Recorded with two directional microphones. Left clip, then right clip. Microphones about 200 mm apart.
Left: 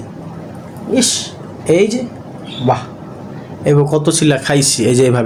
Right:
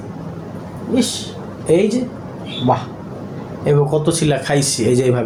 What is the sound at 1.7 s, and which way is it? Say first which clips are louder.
Speech: left 3 dB; 50° left (ahead or behind).